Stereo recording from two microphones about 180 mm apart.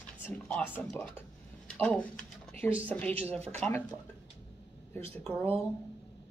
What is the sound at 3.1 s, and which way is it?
Speech, 35° right (ahead or behind).